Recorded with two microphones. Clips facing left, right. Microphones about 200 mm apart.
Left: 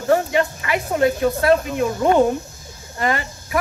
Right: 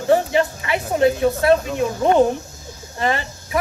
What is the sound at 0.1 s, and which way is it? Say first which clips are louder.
Speech: right 1 dB; 25° right (ahead or behind).